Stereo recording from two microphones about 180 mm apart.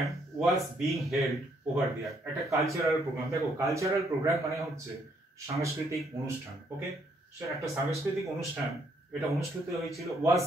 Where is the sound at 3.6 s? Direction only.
15° right (ahead or behind).